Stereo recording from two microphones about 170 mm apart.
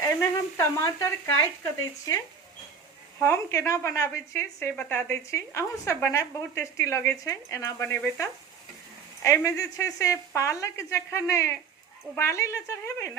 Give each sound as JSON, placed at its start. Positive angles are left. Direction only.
{"t": 0.0, "sound": "speech", "side_deg": 15}
{"t": 3.2, "sound": "speech", "side_deg": 15}